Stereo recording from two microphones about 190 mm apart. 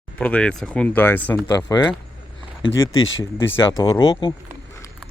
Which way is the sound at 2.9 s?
90° left.